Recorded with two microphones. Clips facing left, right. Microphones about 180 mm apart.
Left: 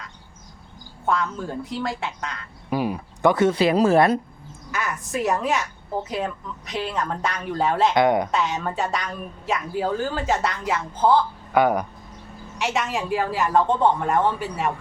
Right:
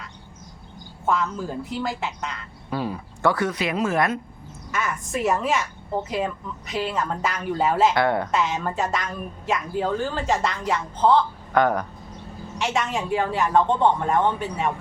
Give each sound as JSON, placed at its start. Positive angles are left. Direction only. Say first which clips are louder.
{"t": 1.0, "sound": "a woman's voice", "louder": "even", "side_deg": 0}
{"t": 2.6, "sound": "speech", "louder": "left 3 dB", "side_deg": 15}
{"t": 4.7, "sound": "a woman's voice", "louder": "even", "side_deg": 0}
{"t": 7.9, "sound": "speech", "louder": "left 3 dB", "side_deg": 15}
{"t": 8.3, "sound": "a woman's voice", "louder": "even", "side_deg": 0}